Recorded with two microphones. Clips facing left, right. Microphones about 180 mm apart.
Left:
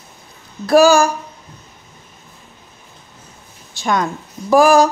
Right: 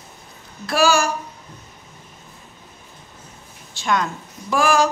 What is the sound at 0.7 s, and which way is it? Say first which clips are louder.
Speech: left 8 dB; 40° left (ahead or behind).